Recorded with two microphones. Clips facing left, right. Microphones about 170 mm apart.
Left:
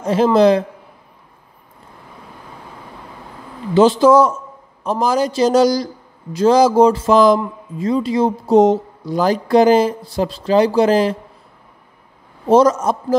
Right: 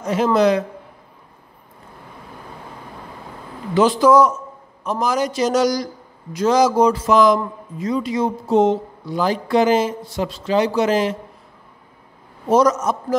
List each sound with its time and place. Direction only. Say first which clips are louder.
0.0 s a man's voice: left 4 dB; 30° left (ahead or behind)
3.7 s a man's voice: left 3 dB; 25° left (ahead or behind)
12.4 s a man's voice: left 3 dB; 30° left (ahead or behind)